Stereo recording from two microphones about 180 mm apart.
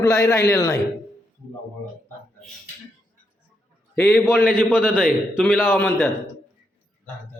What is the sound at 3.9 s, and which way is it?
A man's voice, 10° left (ahead or behind).